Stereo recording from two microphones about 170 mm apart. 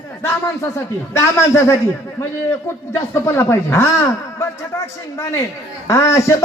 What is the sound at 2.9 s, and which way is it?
Speech, 15° left (ahead or behind).